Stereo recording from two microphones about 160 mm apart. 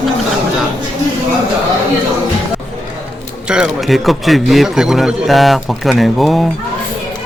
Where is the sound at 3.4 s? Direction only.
5° right (ahead or behind).